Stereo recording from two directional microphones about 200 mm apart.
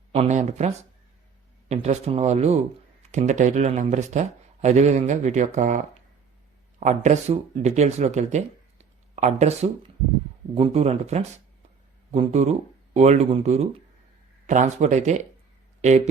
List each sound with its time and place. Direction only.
0.1 s speech: 35° right (ahead or behind)